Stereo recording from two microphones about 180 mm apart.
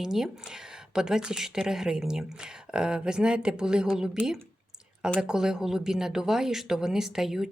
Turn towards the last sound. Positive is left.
turn(degrees=0)  # may be behind; listen again after turning